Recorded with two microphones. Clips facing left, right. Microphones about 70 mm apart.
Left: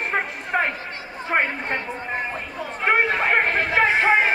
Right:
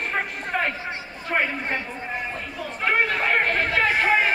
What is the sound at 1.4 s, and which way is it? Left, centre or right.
Speech, left.